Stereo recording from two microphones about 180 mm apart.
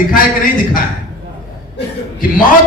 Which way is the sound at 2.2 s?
50° left (ahead or behind).